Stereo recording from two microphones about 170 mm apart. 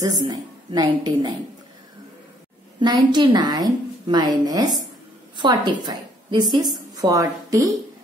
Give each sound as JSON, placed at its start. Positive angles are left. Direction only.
{"t": 0.0, "sound": "a woman's voice", "side_deg": -25}
{"t": 2.8, "sound": "a woman's voice", "side_deg": -25}